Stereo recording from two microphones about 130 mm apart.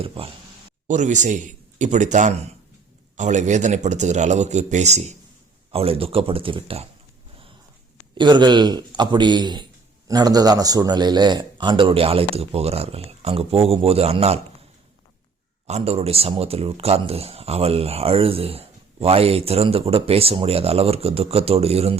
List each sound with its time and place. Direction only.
0.0 s speech: 45° right (ahead or behind)
0.9 s speech: 70° right (ahead or behind)
5.7 s speech: 45° right (ahead or behind)
8.1 s a man's voice: 35° right (ahead or behind)
15.6 s speech: 55° right (ahead or behind)